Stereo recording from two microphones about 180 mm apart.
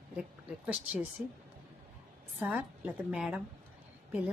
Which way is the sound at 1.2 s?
5° right (ahead or behind).